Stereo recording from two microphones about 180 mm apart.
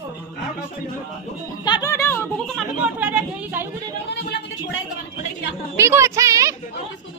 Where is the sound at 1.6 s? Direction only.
20° left (ahead or behind).